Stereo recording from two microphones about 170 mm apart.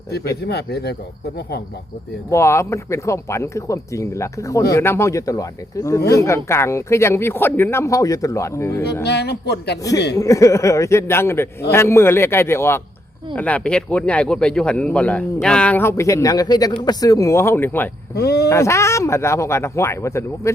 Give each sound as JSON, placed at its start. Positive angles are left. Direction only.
{"t": 0.1, "sound": "speech", "side_deg": 70}
{"t": 2.3, "sound": "speech", "side_deg": 15}
{"t": 9.0, "sound": "speech", "side_deg": 75}
{"t": 10.2, "sound": "speech", "side_deg": 20}
{"t": 18.1, "sound": "speech", "side_deg": 70}
{"t": 18.4, "sound": "speech", "side_deg": 15}